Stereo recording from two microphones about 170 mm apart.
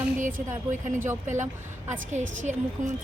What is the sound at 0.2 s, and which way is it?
Speech, 50° right (ahead or behind).